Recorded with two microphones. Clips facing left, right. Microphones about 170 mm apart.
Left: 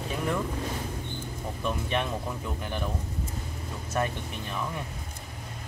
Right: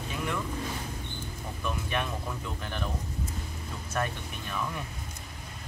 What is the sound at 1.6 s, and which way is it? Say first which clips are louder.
Speech: left 3 dB; 25° left (ahead or behind).